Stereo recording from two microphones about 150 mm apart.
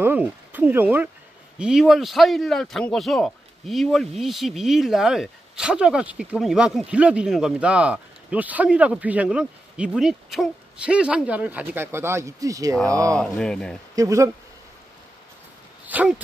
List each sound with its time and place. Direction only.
0.0 s speech: 15° right (ahead or behind)
13.1 s speech: 5° left (ahead or behind)
13.9 s speech: 20° right (ahead or behind)
15.9 s speech: 10° right (ahead or behind)